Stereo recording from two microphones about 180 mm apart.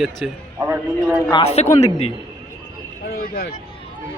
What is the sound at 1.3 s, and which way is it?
Speech, 30° left (ahead or behind).